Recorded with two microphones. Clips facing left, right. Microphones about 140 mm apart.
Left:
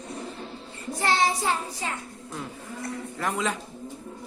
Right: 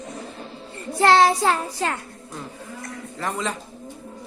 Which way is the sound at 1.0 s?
75° right (ahead or behind).